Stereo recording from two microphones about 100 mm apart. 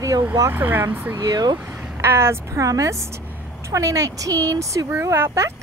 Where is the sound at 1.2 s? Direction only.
40° right (ahead or behind).